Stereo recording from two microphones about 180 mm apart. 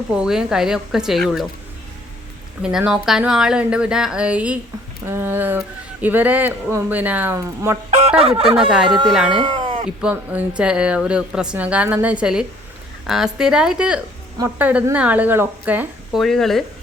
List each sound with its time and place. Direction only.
0.1 s speech: 5° right (ahead or behind)
2.6 s speech: 5° right (ahead or behind)
7.9 s speech: 40° right (ahead or behind)
9.4 s cat: 25° right (ahead or behind)
10.0 s speech: 5° right (ahead or behind)
16.2 s speech: centre (ahead or behind)